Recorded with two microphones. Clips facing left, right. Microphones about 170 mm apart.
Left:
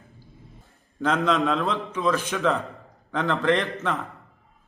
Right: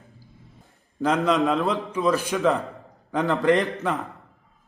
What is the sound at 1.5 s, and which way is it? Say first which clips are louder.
Speech: right 2 dB; 40° right (ahead or behind).